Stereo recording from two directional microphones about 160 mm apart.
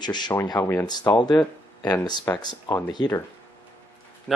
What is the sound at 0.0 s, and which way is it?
Speech, 25° left (ahead or behind).